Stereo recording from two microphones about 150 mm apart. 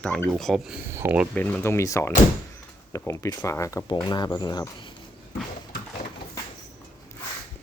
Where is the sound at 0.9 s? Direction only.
15° right (ahead or behind).